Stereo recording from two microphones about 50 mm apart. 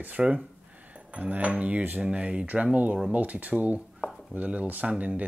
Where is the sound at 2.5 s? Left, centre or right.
Right.